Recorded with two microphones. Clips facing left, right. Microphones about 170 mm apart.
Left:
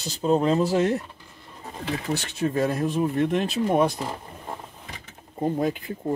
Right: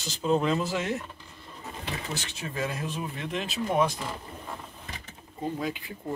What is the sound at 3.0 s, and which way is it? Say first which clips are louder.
Speech: left 10 dB; 50° left (ahead or behind).